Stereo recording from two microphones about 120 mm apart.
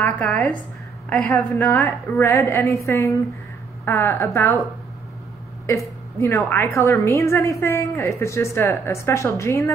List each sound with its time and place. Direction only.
0.0 s a woman's voice: 15° left (ahead or behind)
5.7 s a woman's voice: 20° left (ahead or behind)